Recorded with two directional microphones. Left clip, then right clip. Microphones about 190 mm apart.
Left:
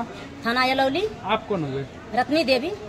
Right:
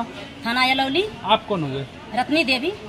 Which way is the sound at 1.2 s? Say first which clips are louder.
Right 8 dB; 50° right (ahead or behind).